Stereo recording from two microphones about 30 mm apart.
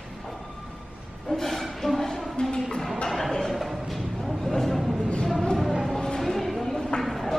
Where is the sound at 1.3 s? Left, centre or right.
Centre.